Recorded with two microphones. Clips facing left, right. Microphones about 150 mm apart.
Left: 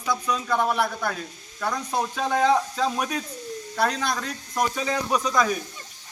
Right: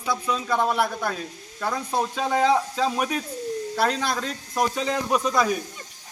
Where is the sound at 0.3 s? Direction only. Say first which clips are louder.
Right 1 dB; 5° right (ahead or behind).